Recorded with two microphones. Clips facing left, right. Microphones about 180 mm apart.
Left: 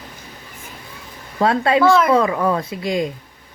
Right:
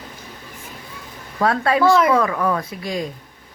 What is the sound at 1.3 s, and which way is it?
Speech, 25° left (ahead or behind).